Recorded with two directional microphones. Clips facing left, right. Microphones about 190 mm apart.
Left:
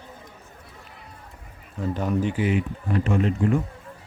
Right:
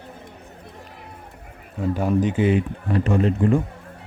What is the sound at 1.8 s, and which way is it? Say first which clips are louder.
Speech: right 4 dB; 10° right (ahead or behind).